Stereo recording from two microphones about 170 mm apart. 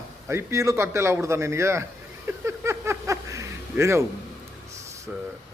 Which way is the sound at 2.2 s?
15° right (ahead or behind).